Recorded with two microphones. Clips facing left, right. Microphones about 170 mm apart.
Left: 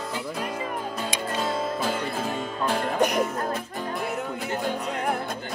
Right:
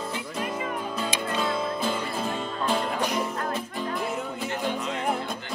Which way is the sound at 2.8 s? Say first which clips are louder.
Left 4 dB; 60° left (ahead or behind).